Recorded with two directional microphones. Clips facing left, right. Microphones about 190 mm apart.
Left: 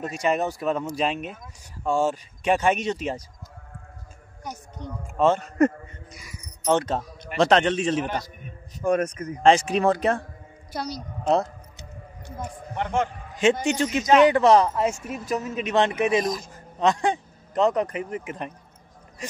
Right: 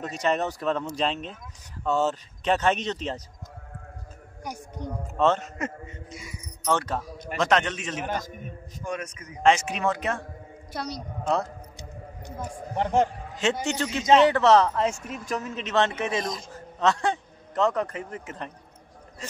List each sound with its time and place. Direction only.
0.0 s speech: 10° left (ahead or behind)
4.5 s speech: 10° right (ahead or behind)
5.0 s speech: 10° left (ahead or behind)
6.0 s speech: 25° right (ahead or behind)
6.6 s a man's voice: 20° left (ahead or behind)
8.1 s a man's voice: 45° right (ahead or behind)
8.8 s a man's voice: 55° left (ahead or behind)
9.4 s a man's voice: 35° left (ahead or behind)
10.7 s a woman's voice: centre (ahead or behind)
12.7 s a man's voice: 35° right (ahead or behind)
13.4 s speech: 15° left (ahead or behind)